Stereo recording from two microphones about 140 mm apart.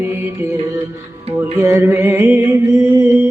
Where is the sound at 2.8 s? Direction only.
15° right (ahead or behind).